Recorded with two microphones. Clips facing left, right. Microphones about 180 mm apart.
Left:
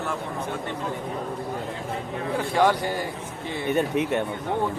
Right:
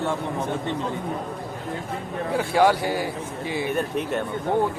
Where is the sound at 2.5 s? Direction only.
10° right (ahead or behind).